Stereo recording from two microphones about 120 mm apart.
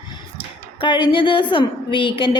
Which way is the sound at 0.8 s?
40° left (ahead or behind).